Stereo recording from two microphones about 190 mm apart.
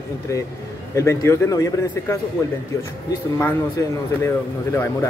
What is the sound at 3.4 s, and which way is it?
Speech, 15° left (ahead or behind).